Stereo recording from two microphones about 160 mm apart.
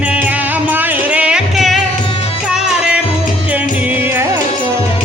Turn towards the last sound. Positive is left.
turn(degrees=-10)  # may be behind; listen again after turning